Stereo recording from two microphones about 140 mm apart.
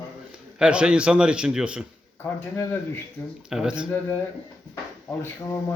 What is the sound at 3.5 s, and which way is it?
Speech, 5° right (ahead or behind).